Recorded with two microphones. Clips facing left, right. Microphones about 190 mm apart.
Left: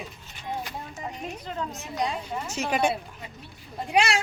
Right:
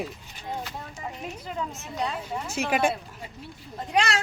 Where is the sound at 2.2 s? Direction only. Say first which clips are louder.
Right 1 dB; 10° right (ahead or behind).